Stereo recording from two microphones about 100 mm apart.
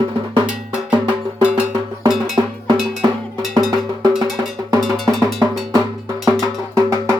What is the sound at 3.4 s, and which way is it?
Cowbell, centre (ahead or behind).